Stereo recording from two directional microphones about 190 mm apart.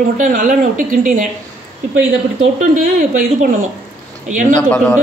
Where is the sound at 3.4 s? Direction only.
45° right (ahead or behind).